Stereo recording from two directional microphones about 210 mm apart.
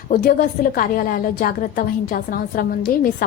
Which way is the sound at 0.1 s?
45° left (ahead or behind).